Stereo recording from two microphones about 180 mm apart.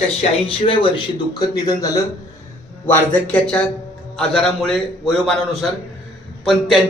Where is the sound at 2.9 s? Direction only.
10° left (ahead or behind).